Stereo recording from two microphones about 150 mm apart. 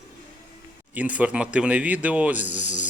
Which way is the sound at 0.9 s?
10° right (ahead or behind).